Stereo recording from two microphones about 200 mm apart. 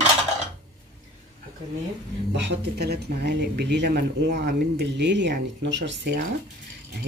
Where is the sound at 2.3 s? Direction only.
60° right (ahead or behind).